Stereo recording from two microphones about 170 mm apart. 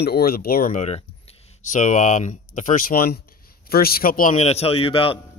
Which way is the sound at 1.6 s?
45° left (ahead or behind).